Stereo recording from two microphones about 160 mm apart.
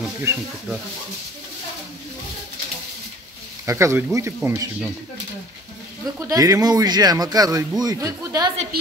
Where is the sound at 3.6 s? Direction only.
20° right (ahead or behind).